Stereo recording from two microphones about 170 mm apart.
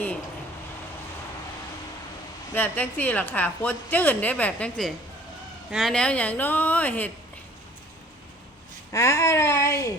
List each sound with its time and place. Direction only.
2.6 s a woman's voice: 10° left (ahead or behind)
8.9 s a woman's voice: 20° left (ahead or behind)